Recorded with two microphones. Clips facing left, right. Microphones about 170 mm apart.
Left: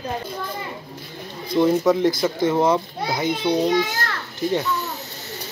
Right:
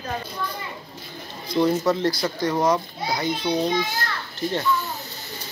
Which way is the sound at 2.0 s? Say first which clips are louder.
Left 4 dB; 20° left (ahead or behind).